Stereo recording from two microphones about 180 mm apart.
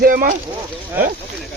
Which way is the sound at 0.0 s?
50° right (ahead or behind).